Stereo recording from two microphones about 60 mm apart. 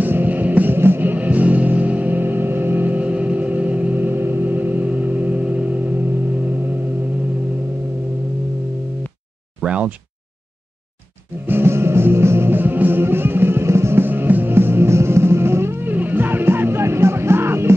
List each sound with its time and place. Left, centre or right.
0.0 s music: right
9.6 s a sound: right
11.4 s music: right